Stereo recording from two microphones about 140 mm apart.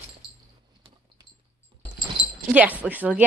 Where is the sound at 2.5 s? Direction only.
10° right (ahead or behind).